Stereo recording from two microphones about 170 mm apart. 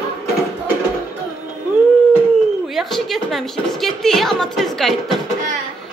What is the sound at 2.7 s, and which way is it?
A woman's voice, centre (ahead or behind).